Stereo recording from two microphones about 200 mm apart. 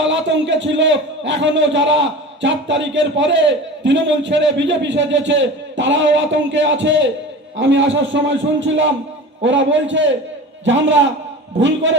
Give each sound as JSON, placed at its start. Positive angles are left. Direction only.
{"t": 0.0, "sound": "a man's voice", "side_deg": -65}